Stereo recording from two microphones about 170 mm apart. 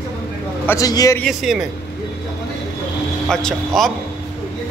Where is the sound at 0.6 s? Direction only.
20° left (ahead or behind).